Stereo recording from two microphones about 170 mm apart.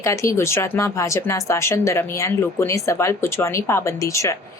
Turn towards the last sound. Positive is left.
turn(degrees=20)  # may be behind; listen again after turning